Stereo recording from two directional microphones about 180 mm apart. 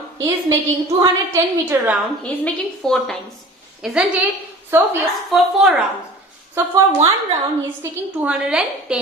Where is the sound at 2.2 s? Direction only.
5° left (ahead or behind).